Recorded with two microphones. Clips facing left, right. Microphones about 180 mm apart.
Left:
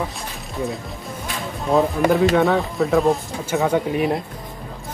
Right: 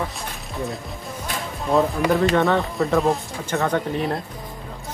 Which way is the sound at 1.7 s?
Centre (ahead or behind).